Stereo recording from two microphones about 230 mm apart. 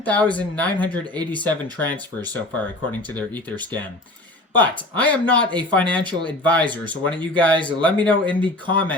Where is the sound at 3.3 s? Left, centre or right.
Centre.